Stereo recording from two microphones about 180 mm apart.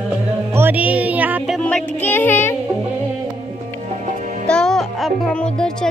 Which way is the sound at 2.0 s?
10° left (ahead or behind).